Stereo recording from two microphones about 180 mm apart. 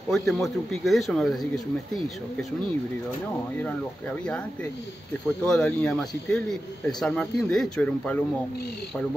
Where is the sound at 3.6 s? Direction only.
5° left (ahead or behind).